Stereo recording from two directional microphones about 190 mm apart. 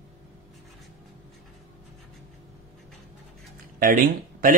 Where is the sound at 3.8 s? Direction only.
45° right (ahead or behind).